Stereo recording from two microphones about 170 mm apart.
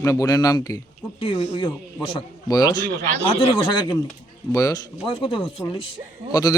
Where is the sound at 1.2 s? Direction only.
30° left (ahead or behind).